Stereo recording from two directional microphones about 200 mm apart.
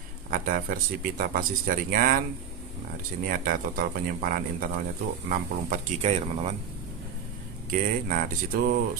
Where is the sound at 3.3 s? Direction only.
45° right (ahead or behind).